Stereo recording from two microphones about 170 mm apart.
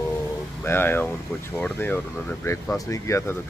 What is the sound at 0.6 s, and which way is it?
A man's voice, 15° left (ahead or behind).